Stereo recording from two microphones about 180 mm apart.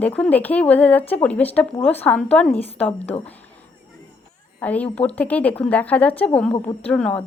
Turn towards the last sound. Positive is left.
turn(degrees=10)  # may be behind; listen again after turning